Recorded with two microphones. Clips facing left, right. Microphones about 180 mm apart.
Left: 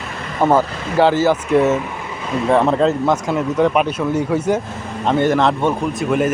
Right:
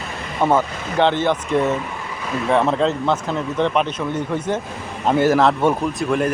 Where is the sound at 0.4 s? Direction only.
5° left (ahead or behind).